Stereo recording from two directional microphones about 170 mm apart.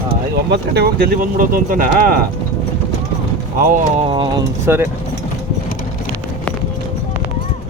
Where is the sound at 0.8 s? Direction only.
65° right (ahead or behind).